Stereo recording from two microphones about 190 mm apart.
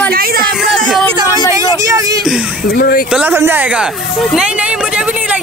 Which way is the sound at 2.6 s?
50° left (ahead or behind).